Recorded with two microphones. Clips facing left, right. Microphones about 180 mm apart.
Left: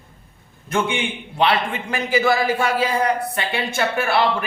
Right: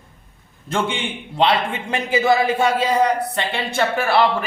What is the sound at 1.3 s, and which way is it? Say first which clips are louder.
Speech: right 1 dB; 25° right (ahead or behind).